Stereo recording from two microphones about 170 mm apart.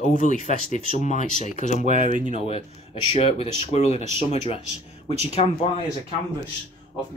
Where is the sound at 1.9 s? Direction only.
50° right (ahead or behind).